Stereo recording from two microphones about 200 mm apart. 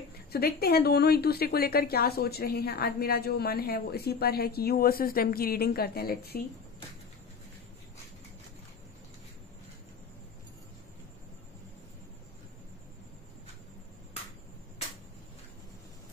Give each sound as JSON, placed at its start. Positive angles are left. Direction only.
{"t": 0.3, "sound": "a woman's voice", "side_deg": 50}